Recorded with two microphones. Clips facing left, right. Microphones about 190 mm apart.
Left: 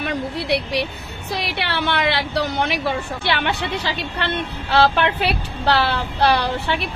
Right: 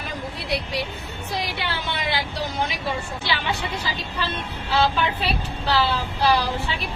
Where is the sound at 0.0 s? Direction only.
70° left (ahead or behind).